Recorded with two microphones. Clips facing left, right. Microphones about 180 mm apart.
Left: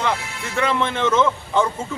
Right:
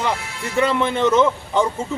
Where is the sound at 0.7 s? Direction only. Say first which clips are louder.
Right 2 dB; 10° right (ahead or behind).